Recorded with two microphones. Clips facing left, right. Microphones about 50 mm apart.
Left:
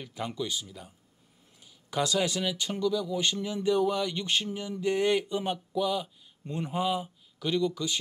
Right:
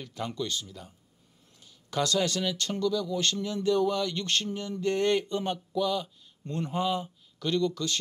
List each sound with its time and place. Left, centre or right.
0.0 s speech: centre